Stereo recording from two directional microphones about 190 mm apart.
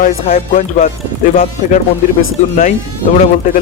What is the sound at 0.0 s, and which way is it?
Speech, 45° left (ahead or behind).